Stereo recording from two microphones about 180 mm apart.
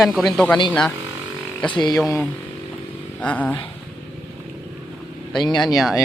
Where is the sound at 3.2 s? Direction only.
10° left (ahead or behind).